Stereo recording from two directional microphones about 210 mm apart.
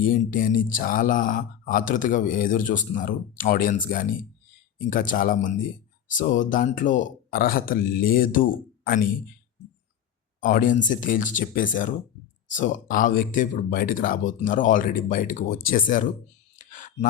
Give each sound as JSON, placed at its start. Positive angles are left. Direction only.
{"t": 0.0, "sound": "speech", "side_deg": 40}
{"t": 10.4, "sound": "speech", "side_deg": 40}
{"t": 16.6, "sound": "a sound", "side_deg": 40}